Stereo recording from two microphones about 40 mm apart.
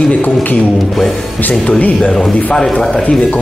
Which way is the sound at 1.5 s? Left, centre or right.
Left.